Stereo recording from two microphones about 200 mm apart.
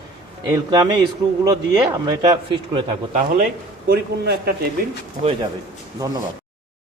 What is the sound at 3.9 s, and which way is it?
A man's voice, 50° right (ahead or behind).